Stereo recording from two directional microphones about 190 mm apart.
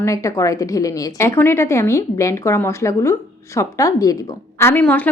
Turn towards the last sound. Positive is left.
turn(degrees=10)  # may be behind; listen again after turning